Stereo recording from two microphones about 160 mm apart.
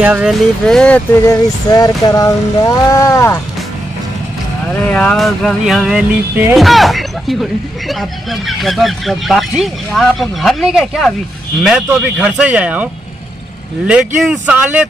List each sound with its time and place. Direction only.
0.0 s speech: 5° right (ahead or behind)
1.2 s a sound: 20° left (ahead or behind)
4.9 s a man's voice: 5° left (ahead or behind)